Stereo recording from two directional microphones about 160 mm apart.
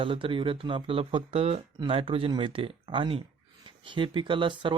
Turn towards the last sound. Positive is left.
turn(degrees=-30)  # may be behind; listen again after turning